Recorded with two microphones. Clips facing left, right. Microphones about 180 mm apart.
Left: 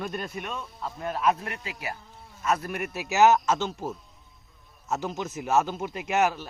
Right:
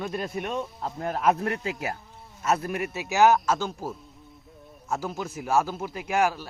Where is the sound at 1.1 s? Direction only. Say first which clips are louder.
Right 3 dB; 60° right (ahead or behind).